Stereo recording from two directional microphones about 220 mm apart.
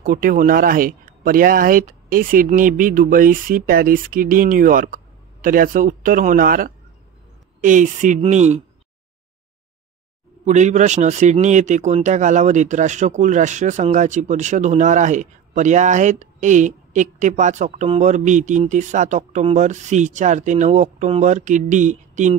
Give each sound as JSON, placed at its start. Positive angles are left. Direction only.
{"t": 0.0, "sound": "speech", "side_deg": -40}
{"t": 10.4, "sound": "speech", "side_deg": -30}